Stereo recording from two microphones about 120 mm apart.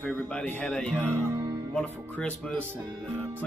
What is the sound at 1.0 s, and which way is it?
Music, 20° right (ahead or behind).